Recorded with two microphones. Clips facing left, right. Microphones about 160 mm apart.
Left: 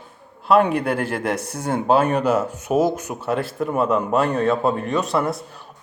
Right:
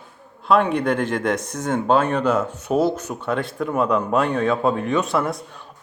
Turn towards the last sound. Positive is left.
turn(degrees=0)  # may be behind; listen again after turning